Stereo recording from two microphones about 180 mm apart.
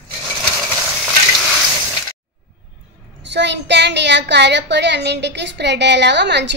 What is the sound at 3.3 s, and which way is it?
A woman's voice, 75° right (ahead or behind).